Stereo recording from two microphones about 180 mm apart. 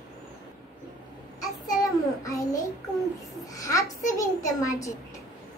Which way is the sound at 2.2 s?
20° left (ahead or behind).